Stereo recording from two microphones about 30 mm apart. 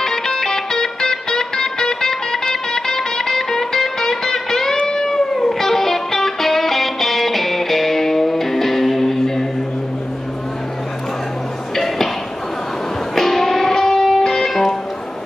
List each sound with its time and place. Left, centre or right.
0.0 s music: centre
11.7 s music: centre
13.1 s music: centre